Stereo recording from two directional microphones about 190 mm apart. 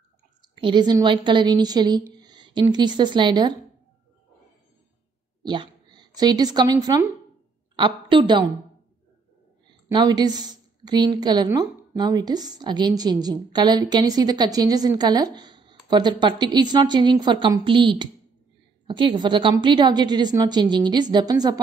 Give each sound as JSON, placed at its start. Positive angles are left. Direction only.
{"t": 0.4, "sound": "a woman's voice", "side_deg": -25}
{"t": 5.4, "sound": "a woman's voice", "side_deg": -25}
{"t": 9.8, "sound": "a woman's voice", "side_deg": -20}